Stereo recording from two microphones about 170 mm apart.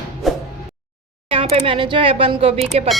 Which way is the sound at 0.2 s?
Centre (ahead or behind).